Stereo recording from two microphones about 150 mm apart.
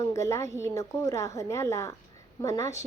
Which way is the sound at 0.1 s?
20° left (ahead or behind).